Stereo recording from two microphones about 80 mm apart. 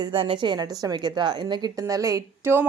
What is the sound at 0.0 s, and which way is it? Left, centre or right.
A woman's voice, right.